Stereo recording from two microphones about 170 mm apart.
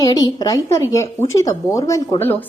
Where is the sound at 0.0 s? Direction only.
20° left (ahead or behind).